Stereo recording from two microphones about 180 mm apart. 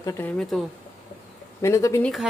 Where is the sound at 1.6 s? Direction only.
15° left (ahead or behind).